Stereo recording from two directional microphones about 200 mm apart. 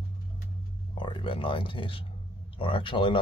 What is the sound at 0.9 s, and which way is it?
Speech, 25° left (ahead or behind).